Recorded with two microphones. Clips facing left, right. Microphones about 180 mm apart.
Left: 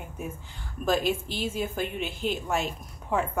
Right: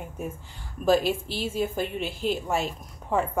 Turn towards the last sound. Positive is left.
turn(degrees=0)  # may be behind; listen again after turning